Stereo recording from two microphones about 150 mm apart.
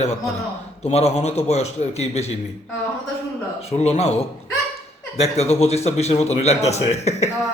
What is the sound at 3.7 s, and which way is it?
A man's voice, 45° left (ahead or behind).